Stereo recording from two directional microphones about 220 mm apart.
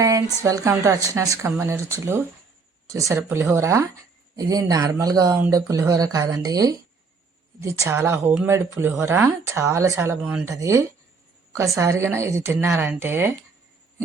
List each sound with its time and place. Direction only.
0.0 s speech: 15° right (ahead or behind)